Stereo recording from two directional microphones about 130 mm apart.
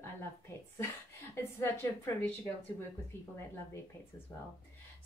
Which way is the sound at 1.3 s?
20° left (ahead or behind).